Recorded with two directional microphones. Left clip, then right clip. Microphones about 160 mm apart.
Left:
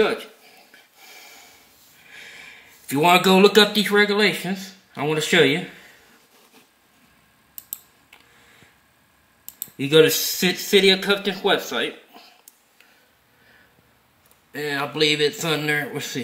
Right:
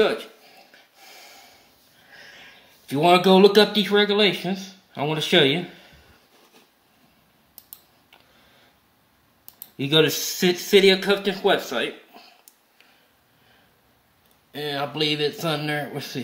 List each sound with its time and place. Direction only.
0.0 s a sound: centre (ahead or behind)
2.9 s speech: centre (ahead or behind)
9.8 s speech: 5° right (ahead or behind)
14.5 s speech: centre (ahead or behind)